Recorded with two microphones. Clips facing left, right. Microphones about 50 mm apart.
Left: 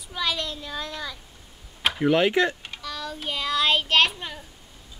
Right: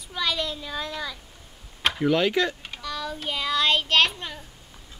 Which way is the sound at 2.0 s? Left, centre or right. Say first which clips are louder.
Left 2 dB; left.